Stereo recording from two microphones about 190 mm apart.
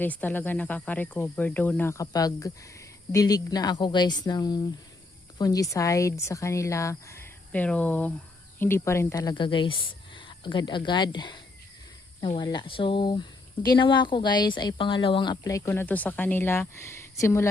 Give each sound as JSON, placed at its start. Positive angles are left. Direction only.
{"t": 0.0, "sound": "speech", "side_deg": 10}
{"t": 12.4, "sound": "speech", "side_deg": 25}